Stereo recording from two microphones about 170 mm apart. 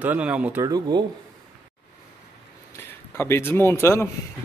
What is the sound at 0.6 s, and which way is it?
Speech, 25° right (ahead or behind).